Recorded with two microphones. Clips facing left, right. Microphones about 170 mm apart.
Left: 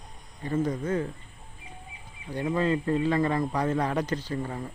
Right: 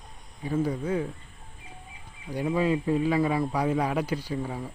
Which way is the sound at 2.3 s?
10° right (ahead or behind).